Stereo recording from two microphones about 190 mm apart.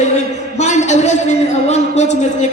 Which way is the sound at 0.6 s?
40° left (ahead or behind).